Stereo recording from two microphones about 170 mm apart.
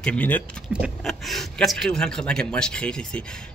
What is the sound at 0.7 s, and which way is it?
Speech, centre (ahead or behind).